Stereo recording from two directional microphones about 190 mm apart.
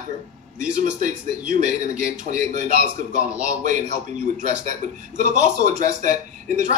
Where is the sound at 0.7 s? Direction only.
40° right (ahead or behind).